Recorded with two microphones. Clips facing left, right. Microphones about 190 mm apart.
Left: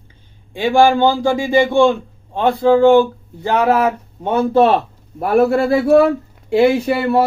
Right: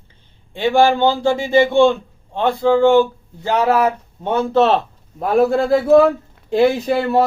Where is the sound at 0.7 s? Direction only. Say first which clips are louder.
Left 2 dB; 15° left (ahead or behind).